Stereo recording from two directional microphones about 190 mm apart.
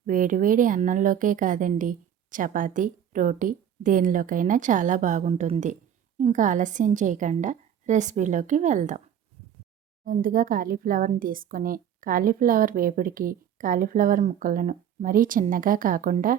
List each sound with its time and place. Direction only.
0.0 s a woman's voice: 45° right (ahead or behind)
10.0 s speech: 45° right (ahead or behind)